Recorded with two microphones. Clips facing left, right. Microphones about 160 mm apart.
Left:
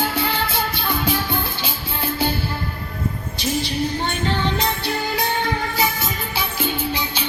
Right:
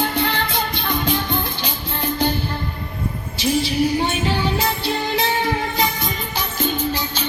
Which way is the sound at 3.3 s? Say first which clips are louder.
Right 5 dB; centre (ahead or behind).